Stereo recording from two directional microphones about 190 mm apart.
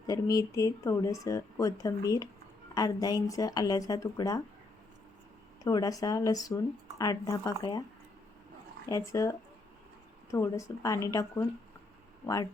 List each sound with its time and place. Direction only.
0.1 s speech: 20° left (ahead or behind)
5.6 s speech: 20° left (ahead or behind)
8.9 s speech: 15° left (ahead or behind)
10.3 s speech: 15° left (ahead or behind)